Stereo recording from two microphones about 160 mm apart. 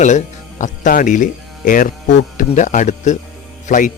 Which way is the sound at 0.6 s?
55° left (ahead or behind).